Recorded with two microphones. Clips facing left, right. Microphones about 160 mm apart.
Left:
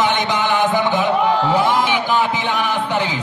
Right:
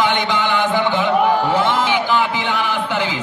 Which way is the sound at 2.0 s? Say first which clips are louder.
Even; 20° left (ahead or behind).